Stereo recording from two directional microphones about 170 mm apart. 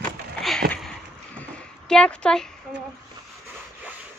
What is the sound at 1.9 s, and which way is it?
Speech, 5° left (ahead or behind).